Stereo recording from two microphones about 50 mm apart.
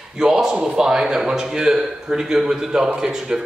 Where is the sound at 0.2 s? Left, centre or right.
Centre.